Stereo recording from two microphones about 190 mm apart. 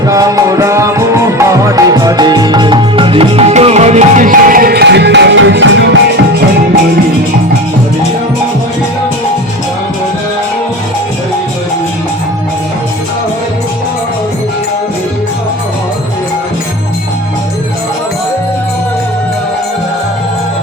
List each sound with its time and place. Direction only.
0.0 s music: 15° right (ahead or behind); by 6.0 s 70° right (ahead or behind)